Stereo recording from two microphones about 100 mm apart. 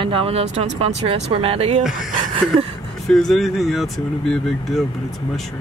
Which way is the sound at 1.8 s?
5° right (ahead or behind).